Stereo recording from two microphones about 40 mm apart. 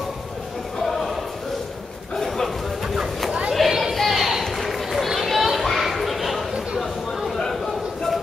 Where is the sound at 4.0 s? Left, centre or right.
Centre.